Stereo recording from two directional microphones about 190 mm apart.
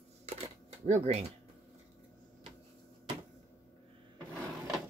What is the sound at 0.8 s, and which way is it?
Speech, 35° right (ahead or behind).